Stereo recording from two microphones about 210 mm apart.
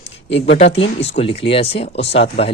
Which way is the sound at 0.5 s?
30° left (ahead or behind).